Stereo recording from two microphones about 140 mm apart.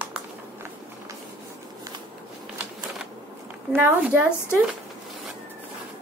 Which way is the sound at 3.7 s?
15° right (ahead or behind).